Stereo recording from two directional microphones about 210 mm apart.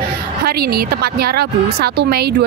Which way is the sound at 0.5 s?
45° right (ahead or behind).